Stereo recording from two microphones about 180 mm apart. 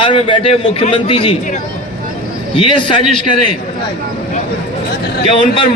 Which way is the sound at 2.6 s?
30° left (ahead or behind).